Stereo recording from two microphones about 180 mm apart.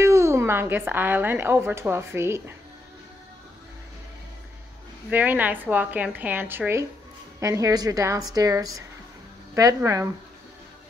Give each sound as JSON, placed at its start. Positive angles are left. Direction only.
{"t": 0.0, "sound": "a woman's voice", "side_deg": -15}
{"t": 5.1, "sound": "a woman's voice", "side_deg": -10}